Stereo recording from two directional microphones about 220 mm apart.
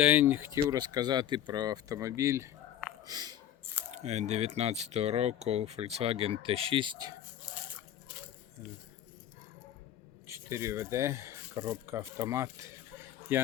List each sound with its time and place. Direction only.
0.0 s speech: 5° right (ahead or behind)
3.9 s speech: 30° right (ahead or behind)
10.2 s speech: 10° right (ahead or behind)